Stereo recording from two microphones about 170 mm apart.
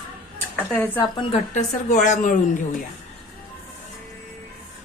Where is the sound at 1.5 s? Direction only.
45° left (ahead or behind).